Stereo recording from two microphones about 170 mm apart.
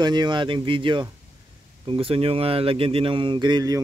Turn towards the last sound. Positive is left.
turn(degrees=-25)  # may be behind; listen again after turning